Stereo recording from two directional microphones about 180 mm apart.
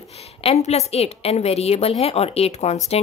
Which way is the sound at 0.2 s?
35° left (ahead or behind).